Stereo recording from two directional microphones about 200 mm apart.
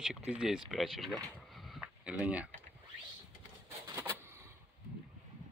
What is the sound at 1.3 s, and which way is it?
Vehicle, centre (ahead or behind).